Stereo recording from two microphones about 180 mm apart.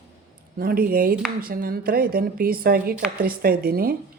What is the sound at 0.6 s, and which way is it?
A woman's voice, 55° right (ahead or behind).